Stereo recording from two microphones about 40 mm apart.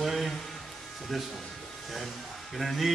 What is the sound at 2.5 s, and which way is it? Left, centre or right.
Speech, centre.